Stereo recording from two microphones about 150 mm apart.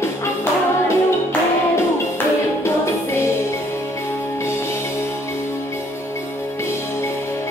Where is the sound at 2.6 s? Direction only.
15° left (ahead or behind).